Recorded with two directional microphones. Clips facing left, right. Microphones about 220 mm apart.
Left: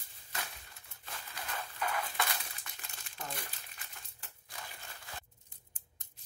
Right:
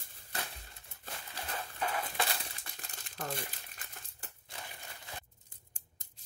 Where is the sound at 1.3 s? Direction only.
30° right (ahead or behind).